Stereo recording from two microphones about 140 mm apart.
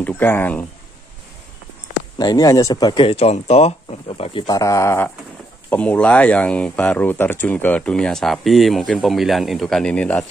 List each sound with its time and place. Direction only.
0.0 s speech: 15° left (ahead or behind)
2.1 s speech: 30° left (ahead or behind)
4.6 s speech: 25° left (ahead or behind)